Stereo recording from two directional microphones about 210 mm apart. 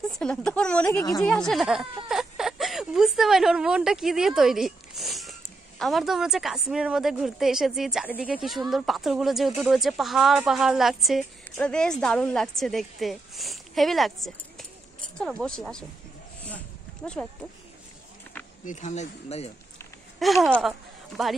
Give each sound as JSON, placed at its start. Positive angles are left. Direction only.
{"t": 0.2, "sound": "a woman's voice", "side_deg": 5}
{"t": 0.8, "sound": "a woman's voice", "side_deg": 15}
{"t": 1.2, "sound": "a woman's voice", "side_deg": 0}
{"t": 2.0, "sound": "a sound", "side_deg": 0}
{"t": 5.8, "sound": "a woman's voice", "side_deg": 0}
{"t": 16.4, "sound": "a sound", "side_deg": 5}
{"t": 18.7, "sound": "speech", "side_deg": 35}
{"t": 20.2, "sound": "speech", "side_deg": 0}